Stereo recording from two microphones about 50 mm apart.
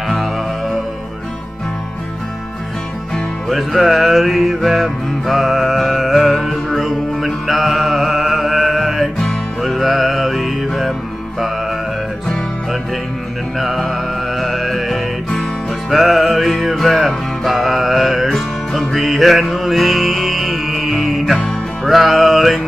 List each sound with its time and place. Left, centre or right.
3.4 s music: centre
13.6 s music: centre